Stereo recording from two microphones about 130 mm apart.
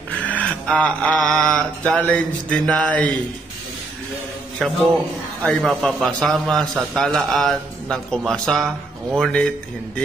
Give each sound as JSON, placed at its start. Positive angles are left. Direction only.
{"t": 0.3, "sound": "mantra", "side_deg": 10}
{"t": 4.6, "sound": "a man's voice", "side_deg": 5}